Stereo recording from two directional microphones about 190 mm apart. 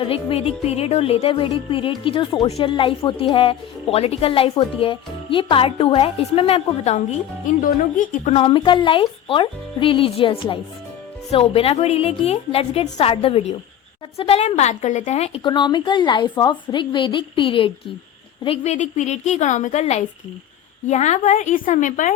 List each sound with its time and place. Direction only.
0.0 s a woman's voice: 30° left (ahead or behind)
7.6 s a woman's voice: 45° left (ahead or behind)